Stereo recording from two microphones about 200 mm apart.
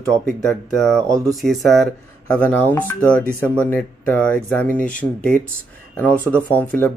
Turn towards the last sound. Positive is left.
turn(degrees=10)  # may be behind; listen again after turning